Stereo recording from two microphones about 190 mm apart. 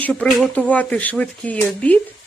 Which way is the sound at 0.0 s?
5° left (ahead or behind).